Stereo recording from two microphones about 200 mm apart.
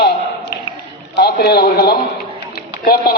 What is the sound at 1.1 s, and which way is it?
Speech, 55° left (ahead or behind).